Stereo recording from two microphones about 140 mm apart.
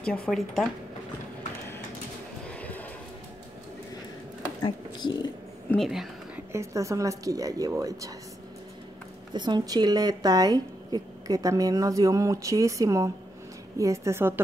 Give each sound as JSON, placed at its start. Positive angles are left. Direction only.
{"t": 0.0, "sound": "speech", "side_deg": 10}
{"t": 2.4, "sound": "a sound", "side_deg": 10}
{"t": 4.6, "sound": "speech", "side_deg": 30}
{"t": 5.8, "sound": "speech", "side_deg": 0}
{"t": 6.5, "sound": "speech", "side_deg": -20}
{"t": 9.3, "sound": "speech", "side_deg": -30}